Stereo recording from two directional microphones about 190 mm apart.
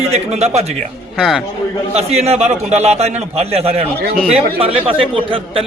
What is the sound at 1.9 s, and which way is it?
A man's voice, 35° right (ahead or behind).